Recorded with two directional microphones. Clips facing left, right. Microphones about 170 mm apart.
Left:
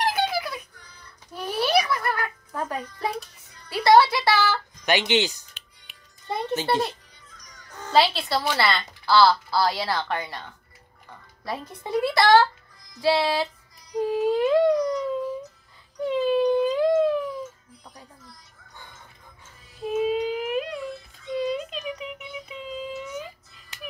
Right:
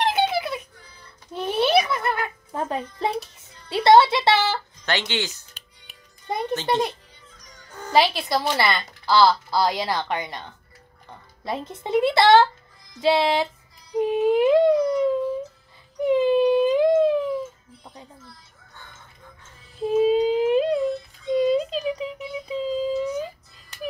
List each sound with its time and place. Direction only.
0.0 s music: 25° right (ahead or behind)
1.3 s a sound: 25° right (ahead or behind)
4.8 s speech: 15° left (ahead or behind)
5.9 s music: 40° right (ahead or behind)
6.3 s a child's voice: 15° right (ahead or behind)
13.0 s music: 20° right (ahead or behind)
13.9 s a sound: 20° right (ahead or behind)
16.0 s music: 20° right (ahead or behind)
19.8 s a sound: 30° right (ahead or behind)